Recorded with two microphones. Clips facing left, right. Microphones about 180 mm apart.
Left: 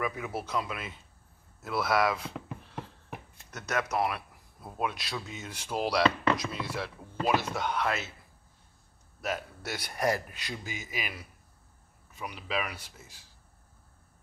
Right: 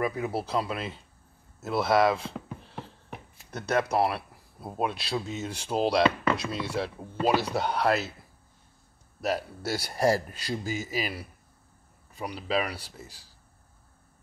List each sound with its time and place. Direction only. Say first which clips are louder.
0.0 s speech: right 5 dB; 35° right (ahead or behind)
2.3 s a sound: right 1 dB; centre (ahead or behind)
3.4 s speech: right 6 dB; 30° right (ahead or behind)
9.2 s speech: right 5 dB; 35° right (ahead or behind)